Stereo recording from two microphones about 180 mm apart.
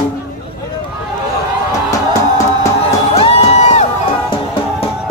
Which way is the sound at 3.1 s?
35° left (ahead or behind).